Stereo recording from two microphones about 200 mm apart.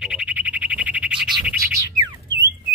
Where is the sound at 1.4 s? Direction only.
15° right (ahead or behind).